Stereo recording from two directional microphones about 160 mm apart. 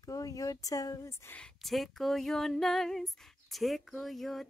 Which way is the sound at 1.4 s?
Centre (ahead or behind).